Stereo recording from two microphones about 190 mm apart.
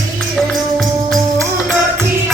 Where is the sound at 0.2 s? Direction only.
Centre (ahead or behind).